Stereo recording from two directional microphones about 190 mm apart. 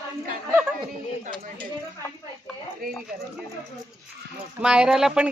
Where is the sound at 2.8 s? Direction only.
50° right (ahead or behind).